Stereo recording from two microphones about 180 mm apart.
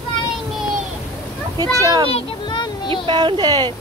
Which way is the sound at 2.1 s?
30° left (ahead or behind).